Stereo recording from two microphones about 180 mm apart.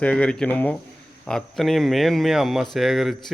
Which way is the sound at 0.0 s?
5° left (ahead or behind).